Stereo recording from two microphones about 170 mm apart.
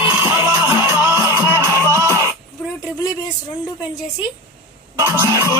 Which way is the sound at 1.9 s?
15° right (ahead or behind).